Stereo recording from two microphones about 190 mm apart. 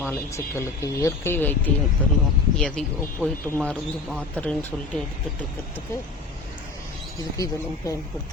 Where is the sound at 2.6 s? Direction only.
5° left (ahead or behind).